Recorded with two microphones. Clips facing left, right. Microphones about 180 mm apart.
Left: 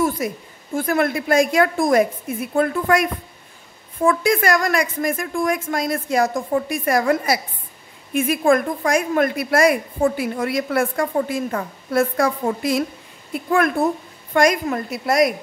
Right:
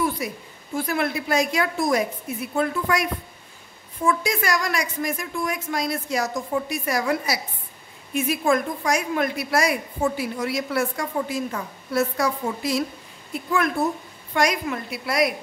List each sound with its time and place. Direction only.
0.2 s a woman's voice: 45° left (ahead or behind)
14.3 s a woman's voice: 50° left (ahead or behind)